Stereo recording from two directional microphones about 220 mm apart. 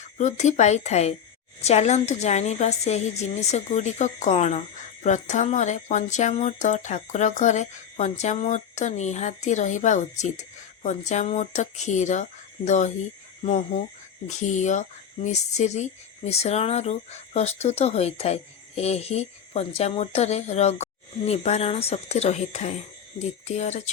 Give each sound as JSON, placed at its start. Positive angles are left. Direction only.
{"t": 0.2, "sound": "speech", "side_deg": 35}